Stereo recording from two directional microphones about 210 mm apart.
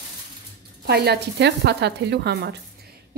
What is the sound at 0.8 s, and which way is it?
A woman's voice, 50° right (ahead or behind).